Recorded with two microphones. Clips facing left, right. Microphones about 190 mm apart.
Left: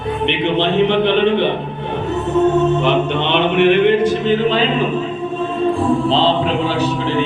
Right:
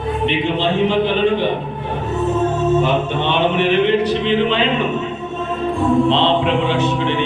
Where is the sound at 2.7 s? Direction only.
65° left (ahead or behind); by 7.2 s 35° left (ahead or behind).